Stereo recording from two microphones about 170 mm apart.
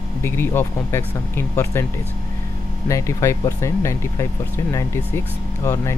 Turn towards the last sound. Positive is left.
turn(degrees=15)  # may be behind; listen again after turning